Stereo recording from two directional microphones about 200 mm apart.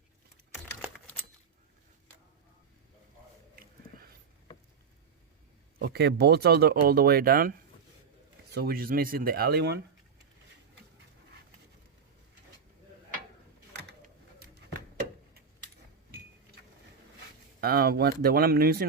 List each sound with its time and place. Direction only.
3.5 s a sound: 45° right (ahead or behind)
5.8 s speech: 55° right (ahead or behind)
8.5 s speech: 50° right (ahead or behind)
17.6 s speech: 50° right (ahead or behind)